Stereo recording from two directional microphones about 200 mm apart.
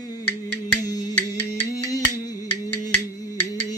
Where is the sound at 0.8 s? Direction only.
20° left (ahead or behind).